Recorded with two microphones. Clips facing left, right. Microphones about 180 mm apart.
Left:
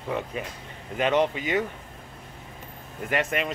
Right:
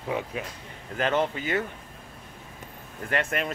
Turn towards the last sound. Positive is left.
turn(degrees=5)  # may be behind; listen again after turning